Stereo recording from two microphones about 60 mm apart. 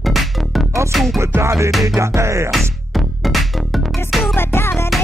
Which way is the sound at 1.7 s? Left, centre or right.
Centre.